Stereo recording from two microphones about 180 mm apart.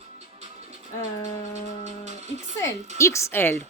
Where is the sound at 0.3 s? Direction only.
35° right (ahead or behind).